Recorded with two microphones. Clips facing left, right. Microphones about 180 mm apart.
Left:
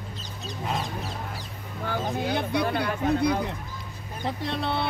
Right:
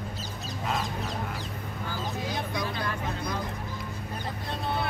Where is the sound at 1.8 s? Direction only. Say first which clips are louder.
Left 7 dB; 65° left (ahead or behind).